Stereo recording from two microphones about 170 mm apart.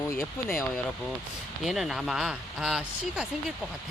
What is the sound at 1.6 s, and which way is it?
Speech, centre (ahead or behind).